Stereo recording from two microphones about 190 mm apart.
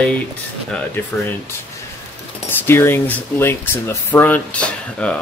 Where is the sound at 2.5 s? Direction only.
10° left (ahead or behind).